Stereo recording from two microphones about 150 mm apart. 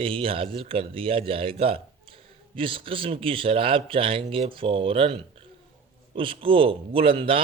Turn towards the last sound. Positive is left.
turn(degrees=-35)  # may be behind; listen again after turning